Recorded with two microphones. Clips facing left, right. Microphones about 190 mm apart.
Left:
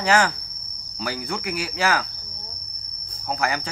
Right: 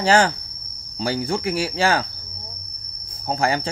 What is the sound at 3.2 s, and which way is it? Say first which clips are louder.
Cricket: right 4 dB; 30° right (ahead or behind).